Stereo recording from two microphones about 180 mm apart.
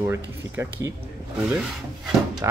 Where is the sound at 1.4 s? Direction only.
5° right (ahead or behind).